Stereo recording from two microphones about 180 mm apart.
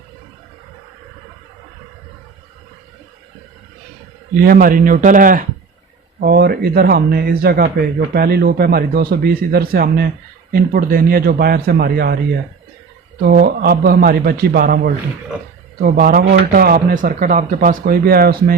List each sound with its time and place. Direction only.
4.4 s speech: 50° right (ahead or behind)
6.1 s speech: 65° right (ahead or behind)
13.2 s speech: 55° right (ahead or behind)